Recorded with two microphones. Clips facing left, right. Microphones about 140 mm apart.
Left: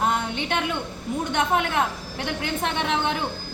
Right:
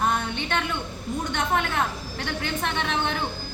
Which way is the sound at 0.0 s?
15° left (ahead or behind).